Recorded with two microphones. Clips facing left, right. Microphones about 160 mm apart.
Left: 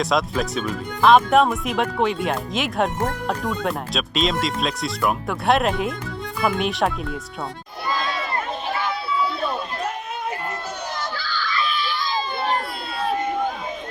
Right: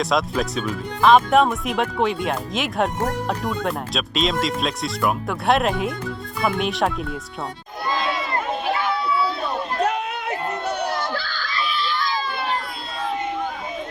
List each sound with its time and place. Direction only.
0.0 s speech: centre (ahead or behind)
9.8 s a sound: 70° right (ahead or behind)
10.9 s screaming: 55° right (ahead or behind)
11.9 s crowd: 15° left (ahead or behind)